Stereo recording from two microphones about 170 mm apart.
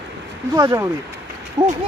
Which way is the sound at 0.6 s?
20° right (ahead or behind).